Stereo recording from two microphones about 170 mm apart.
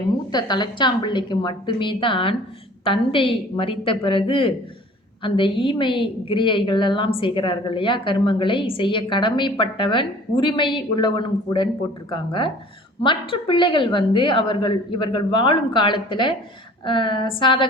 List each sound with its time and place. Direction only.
0.3 s a woman's voice: 25° left (ahead or behind)